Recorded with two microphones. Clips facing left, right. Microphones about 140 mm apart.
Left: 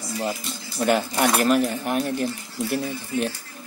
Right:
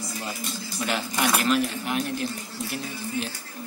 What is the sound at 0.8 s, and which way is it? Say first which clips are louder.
Speech: left 6 dB; 45° left (ahead or behind).